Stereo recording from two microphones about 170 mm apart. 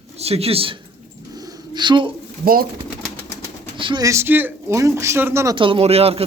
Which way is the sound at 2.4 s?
60° right (ahead or behind).